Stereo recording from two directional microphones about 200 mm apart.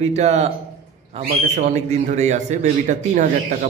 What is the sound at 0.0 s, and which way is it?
A man's voice, 35° right (ahead or behind).